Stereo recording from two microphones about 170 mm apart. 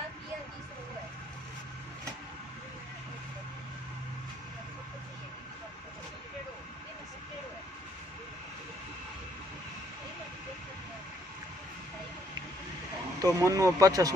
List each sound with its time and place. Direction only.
13.2 s speech: 20° right (ahead or behind)